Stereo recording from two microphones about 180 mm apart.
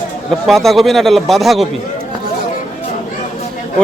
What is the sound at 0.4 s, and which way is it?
A man's voice, centre (ahead or behind).